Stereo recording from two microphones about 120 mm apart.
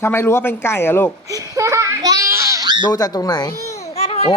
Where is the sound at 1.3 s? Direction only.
30° right (ahead or behind).